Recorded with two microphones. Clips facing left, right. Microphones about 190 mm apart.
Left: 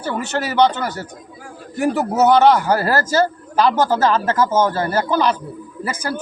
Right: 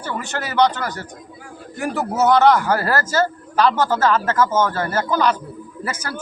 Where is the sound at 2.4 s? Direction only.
20° left (ahead or behind).